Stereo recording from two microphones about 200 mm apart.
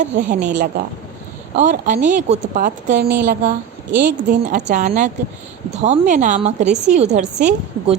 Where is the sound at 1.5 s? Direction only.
40° right (ahead or behind).